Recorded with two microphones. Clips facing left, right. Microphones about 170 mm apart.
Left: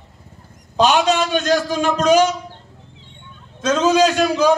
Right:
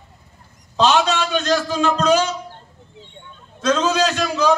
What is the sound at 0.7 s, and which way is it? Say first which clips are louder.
A man's voice: left 2 dB; 15° left (ahead or behind).